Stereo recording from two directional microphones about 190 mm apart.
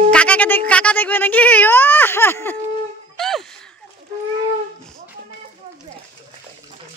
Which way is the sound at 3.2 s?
Centre (ahead or behind).